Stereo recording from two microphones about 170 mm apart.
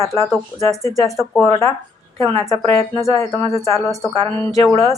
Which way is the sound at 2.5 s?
20° left (ahead or behind).